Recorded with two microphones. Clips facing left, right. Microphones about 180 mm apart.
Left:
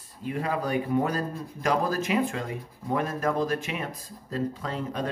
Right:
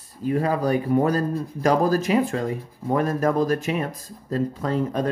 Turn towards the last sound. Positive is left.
turn(degrees=-45)  # may be behind; listen again after turning